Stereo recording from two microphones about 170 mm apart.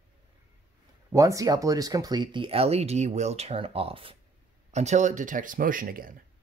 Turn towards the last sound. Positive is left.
turn(degrees=-55)  # may be behind; listen again after turning